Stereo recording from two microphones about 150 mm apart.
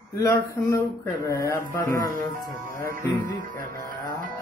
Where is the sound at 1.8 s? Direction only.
65° right (ahead or behind).